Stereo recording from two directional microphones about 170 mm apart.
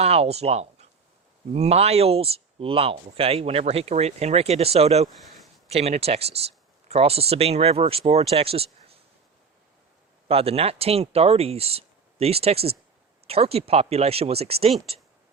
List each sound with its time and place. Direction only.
0.0 s speech: 40° right (ahead or behind)
10.2 s speech: 35° right (ahead or behind)